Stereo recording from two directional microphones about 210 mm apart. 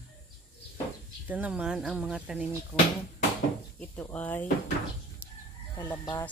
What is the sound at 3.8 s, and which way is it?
Speech, 5° left (ahead or behind).